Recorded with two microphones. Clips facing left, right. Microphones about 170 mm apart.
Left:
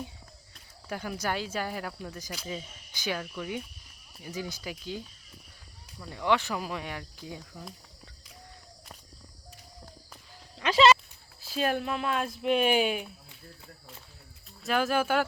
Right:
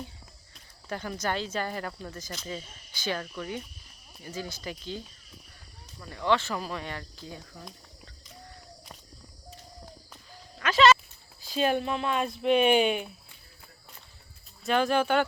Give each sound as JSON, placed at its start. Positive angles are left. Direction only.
{"t": 0.9, "sound": "speech", "side_deg": 10}
{"t": 6.0, "sound": "speech", "side_deg": 10}
{"t": 10.6, "sound": "a sound", "side_deg": 30}
{"t": 11.3, "sound": "speech", "side_deg": 0}
{"t": 14.6, "sound": "speech", "side_deg": 5}